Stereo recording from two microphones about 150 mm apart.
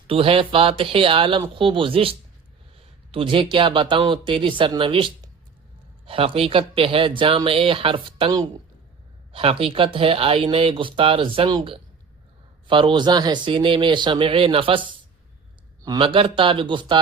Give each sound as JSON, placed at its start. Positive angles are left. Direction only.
{"t": 0.1, "sound": "speech", "side_deg": -35}